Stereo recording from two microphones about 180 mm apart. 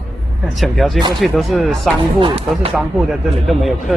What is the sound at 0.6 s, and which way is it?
Speech, centre (ahead or behind).